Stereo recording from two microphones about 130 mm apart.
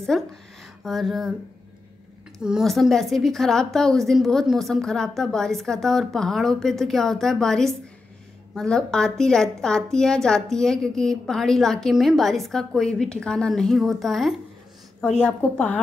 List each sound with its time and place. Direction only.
0.0 s a woman's voice: 5° left (ahead or behind)
2.3 s a woman's voice: centre (ahead or behind)